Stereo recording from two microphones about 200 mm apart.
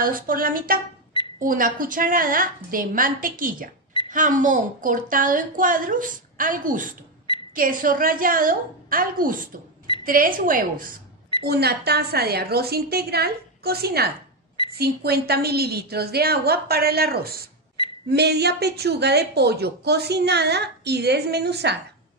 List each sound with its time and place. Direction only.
0.0 s a woman's voice: 45° right (ahead or behind)